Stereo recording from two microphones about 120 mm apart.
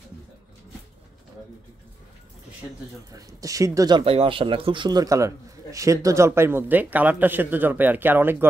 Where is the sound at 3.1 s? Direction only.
30° right (ahead or behind).